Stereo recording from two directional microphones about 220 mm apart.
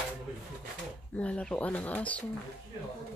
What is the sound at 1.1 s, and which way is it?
Speech, 5° left (ahead or behind).